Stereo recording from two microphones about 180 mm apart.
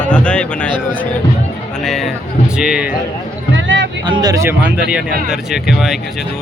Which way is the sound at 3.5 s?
85° right.